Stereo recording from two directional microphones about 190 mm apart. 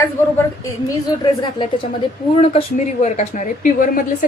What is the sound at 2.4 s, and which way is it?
Speech, 35° left (ahead or behind).